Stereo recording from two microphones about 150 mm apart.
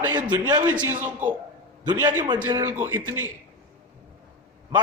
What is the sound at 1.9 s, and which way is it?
Speech, 30° right (ahead or behind).